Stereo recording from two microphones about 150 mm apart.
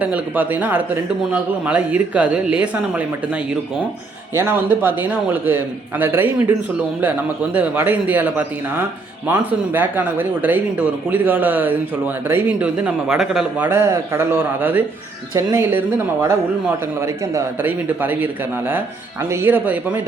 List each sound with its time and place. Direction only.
0.0 s speech: 10° right (ahead or behind)
4.4 s speech: 15° right (ahead or behind)
13.7 s speech: 15° right (ahead or behind)
17.0 s speech: 15° right (ahead or behind)
19.3 s speech: 15° right (ahead or behind)